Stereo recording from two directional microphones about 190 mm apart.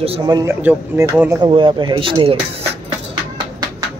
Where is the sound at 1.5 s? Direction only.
25° right (ahead or behind).